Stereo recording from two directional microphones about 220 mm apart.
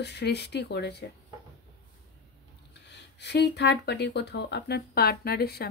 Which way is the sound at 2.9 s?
50° left (ahead or behind).